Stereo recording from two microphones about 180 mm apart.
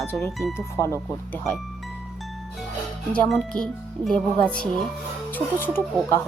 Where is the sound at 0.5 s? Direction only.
15° left (ahead or behind).